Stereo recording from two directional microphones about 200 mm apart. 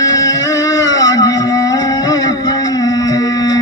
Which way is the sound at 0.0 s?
15° left (ahead or behind).